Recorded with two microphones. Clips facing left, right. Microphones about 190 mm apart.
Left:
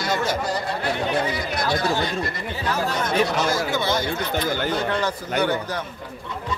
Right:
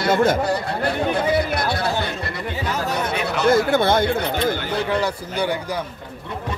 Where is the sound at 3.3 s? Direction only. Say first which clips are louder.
Right 6 dB; 60° right (ahead or behind).